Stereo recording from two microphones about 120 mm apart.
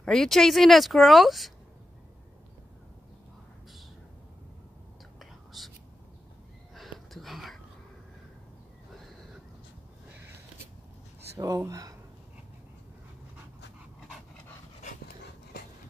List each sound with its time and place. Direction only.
0.0 s speech: 5° left (ahead or behind)
5.2 s whispering: centre (ahead or behind)
6.7 s a sound: centre (ahead or behind)
11.3 s speech: 30° right (ahead or behind)